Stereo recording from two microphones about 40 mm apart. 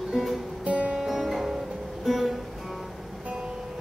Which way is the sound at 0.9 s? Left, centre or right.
Centre.